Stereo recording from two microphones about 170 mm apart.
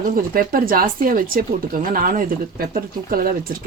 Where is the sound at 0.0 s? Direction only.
55° right (ahead or behind).